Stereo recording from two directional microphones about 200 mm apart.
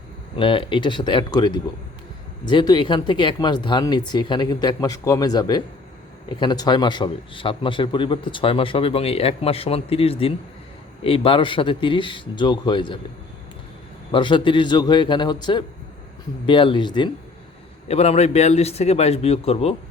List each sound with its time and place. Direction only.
0.3 s a man's voice: 25° left (ahead or behind)
14.1 s a man's voice: 25° left (ahead or behind)